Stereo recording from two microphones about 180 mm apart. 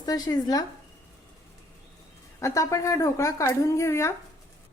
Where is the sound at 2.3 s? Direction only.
15° left (ahead or behind).